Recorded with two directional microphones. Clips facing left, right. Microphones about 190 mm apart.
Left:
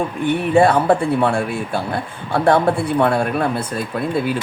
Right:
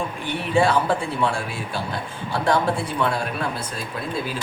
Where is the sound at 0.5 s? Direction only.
55° left (ahead or behind).